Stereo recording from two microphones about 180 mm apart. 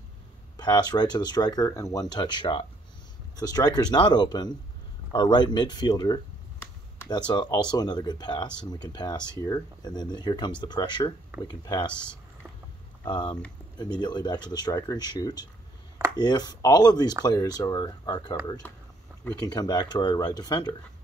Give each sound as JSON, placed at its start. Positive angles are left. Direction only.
{"t": 0.6, "sound": "speech", "side_deg": 20}
{"t": 5.1, "sound": "a sound", "side_deg": 25}
{"t": 7.2, "sound": "speech", "side_deg": 25}
{"t": 13.0, "sound": "speech", "side_deg": 25}
{"t": 19.4, "sound": "speech", "side_deg": 20}